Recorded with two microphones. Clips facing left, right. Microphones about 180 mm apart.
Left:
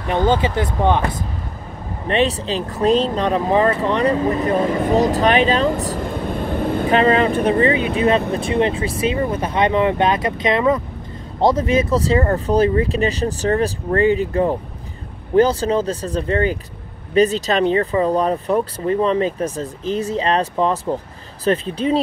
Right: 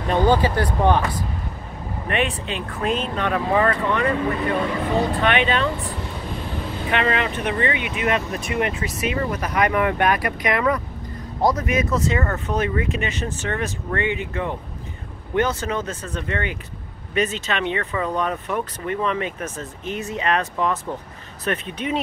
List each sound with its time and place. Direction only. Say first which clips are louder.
0.1 s speech: left 1 dB; 20° left (ahead or behind)
2.0 s speech: left 6 dB; 35° left (ahead or behind)
4.8 s vehicle: left 5 dB; 40° left (ahead or behind); by 6.9 s 55° left (ahead or behind)
6.9 s speech: left 6 dB; 35° left (ahead or behind)